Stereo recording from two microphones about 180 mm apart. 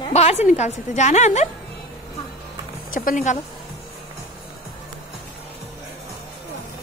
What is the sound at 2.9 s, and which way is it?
Speech, 50° left (ahead or behind).